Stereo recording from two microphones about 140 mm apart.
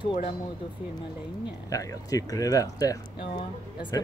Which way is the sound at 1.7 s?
25° left (ahead or behind).